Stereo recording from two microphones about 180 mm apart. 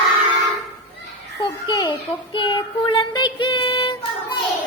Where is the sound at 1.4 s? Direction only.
20° left (ahead or behind).